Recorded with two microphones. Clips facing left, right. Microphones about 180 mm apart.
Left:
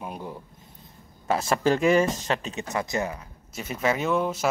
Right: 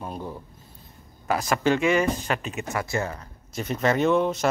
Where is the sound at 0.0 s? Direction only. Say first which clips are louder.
Right 2 dB; 10° left (ahead or behind).